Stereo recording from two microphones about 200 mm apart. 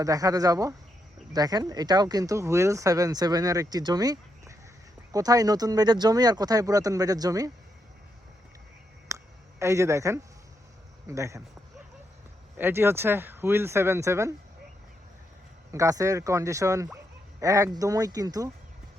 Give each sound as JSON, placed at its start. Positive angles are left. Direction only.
{"t": 0.0, "sound": "speech", "side_deg": -15}
{"t": 9.0, "sound": "a sound", "side_deg": -15}
{"t": 11.1, "sound": "speech", "side_deg": -15}
{"t": 12.5, "sound": "speech", "side_deg": -10}
{"t": 15.7, "sound": "speech", "side_deg": -15}